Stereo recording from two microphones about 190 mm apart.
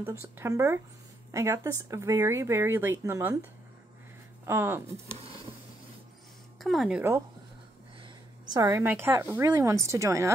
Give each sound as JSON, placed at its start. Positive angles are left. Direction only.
{"t": 0.0, "sound": "speech", "side_deg": -10}
{"t": 4.5, "sound": "speech", "side_deg": -10}
{"t": 6.6, "sound": "speech", "side_deg": 0}
{"t": 8.0, "sound": "a woman's voice", "side_deg": -20}